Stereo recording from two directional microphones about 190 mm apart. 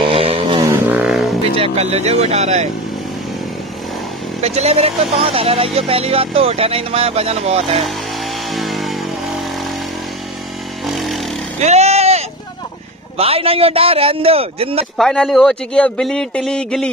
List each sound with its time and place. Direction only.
0.0 s vehicle: 30° right (ahead or behind)
0.7 s vehicle: 10° right (ahead or behind)
1.5 s speech: 30° right (ahead or behind)
4.4 s speech: 35° right (ahead or behind)
8.5 s vehicle: centre (ahead or behind)
10.9 s vehicle: centre (ahead or behind)
11.6 s vehicle: 35° right (ahead or behind)
13.2 s speech: 30° right (ahead or behind)
15.0 s speech: centre (ahead or behind)